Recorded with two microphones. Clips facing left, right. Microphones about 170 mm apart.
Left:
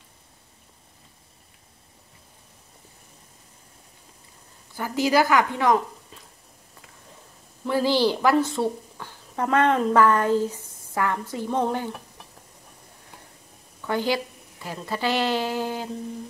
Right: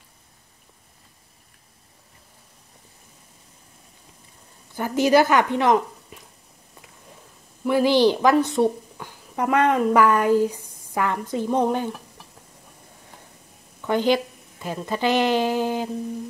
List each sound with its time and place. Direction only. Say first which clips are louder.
4.7 s a woman's voice: right 4 dB; 20° right (ahead or behind)
7.6 s a woman's voice: right 4 dB; 15° right (ahead or behind)
13.7 s a woman's voice: right 4 dB; 20° right (ahead or behind)